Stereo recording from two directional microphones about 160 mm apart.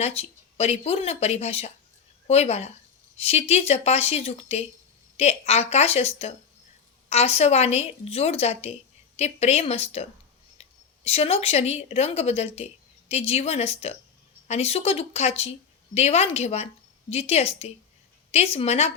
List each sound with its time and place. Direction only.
0.0 s speech: 40° left (ahead or behind)